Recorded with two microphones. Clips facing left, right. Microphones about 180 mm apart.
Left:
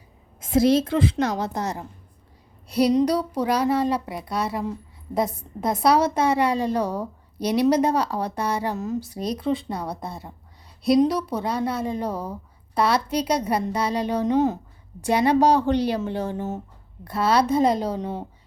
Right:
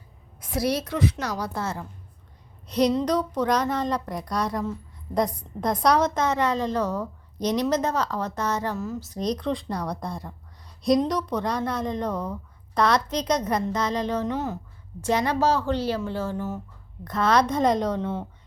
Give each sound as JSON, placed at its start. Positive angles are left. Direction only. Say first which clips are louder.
{"t": 0.3, "sound": "a woman's voice", "louder": "left 8 dB", "side_deg": 25}
{"t": 17.0, "sound": "speech", "louder": "left 1 dB", "side_deg": 10}